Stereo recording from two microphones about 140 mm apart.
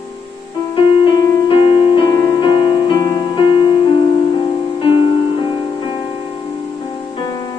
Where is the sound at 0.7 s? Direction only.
35° left (ahead or behind).